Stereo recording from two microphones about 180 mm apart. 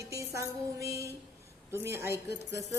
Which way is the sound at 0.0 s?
15° right (ahead or behind).